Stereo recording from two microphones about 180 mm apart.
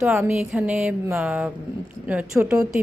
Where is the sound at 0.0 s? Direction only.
15° right (ahead or behind).